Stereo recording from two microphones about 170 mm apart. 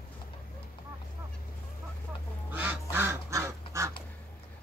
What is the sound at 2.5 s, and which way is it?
Duck, 10° right (ahead or behind).